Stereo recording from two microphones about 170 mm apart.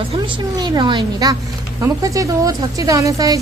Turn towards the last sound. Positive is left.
turn(degrees=-20)  # may be behind; listen again after turning